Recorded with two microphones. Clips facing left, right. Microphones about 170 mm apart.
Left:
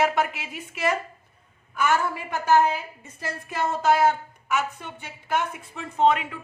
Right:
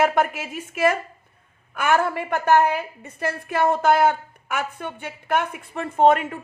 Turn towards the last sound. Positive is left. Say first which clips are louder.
# right 4 dB
turn(degrees=-45)  # may be behind; listen again after turning